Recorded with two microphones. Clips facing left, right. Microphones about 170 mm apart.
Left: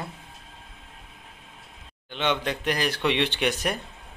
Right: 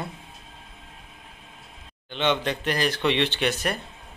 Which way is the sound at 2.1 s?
10° left (ahead or behind).